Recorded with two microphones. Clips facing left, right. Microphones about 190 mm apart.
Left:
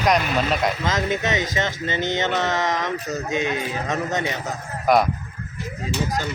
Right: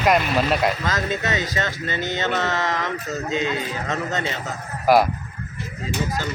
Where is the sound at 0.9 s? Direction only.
20° left (ahead or behind).